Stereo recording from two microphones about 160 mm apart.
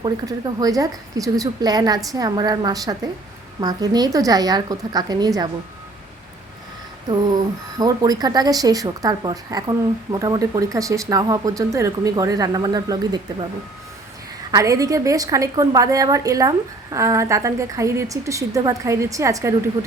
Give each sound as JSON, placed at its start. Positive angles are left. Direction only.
{"t": 0.0, "sound": "speech", "side_deg": -25}
{"t": 7.1, "sound": "speech", "side_deg": -25}
{"t": 14.5, "sound": "speech", "side_deg": -20}